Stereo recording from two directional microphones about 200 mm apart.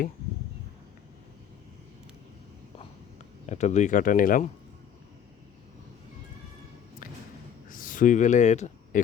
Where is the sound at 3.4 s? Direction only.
35° left (ahead or behind).